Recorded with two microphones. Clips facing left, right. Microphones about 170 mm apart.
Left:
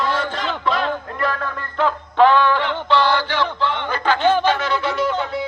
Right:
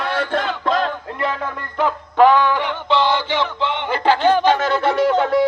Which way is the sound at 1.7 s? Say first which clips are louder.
Right 1 dB; 10° right (ahead or behind).